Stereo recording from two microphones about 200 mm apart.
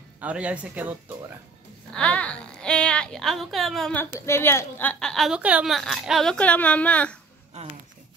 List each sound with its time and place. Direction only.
0.2 s speech: 5° right (ahead or behind)
2.0 s a woman's voice: 5° left (ahead or behind)
7.5 s speech: 35° right (ahead or behind)